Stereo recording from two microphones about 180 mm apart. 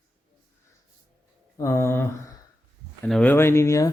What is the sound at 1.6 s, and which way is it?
Speech, 15° left (ahead or behind).